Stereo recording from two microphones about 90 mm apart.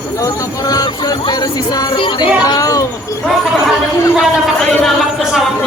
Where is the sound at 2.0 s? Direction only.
60° left (ahead or behind).